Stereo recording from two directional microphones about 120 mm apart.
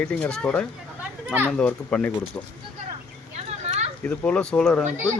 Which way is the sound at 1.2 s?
15° right (ahead or behind).